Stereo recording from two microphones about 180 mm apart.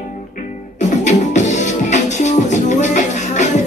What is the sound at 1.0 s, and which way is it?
Music, 40° left (ahead or behind).